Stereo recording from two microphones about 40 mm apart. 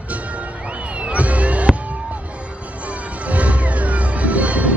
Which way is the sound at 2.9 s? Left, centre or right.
Right.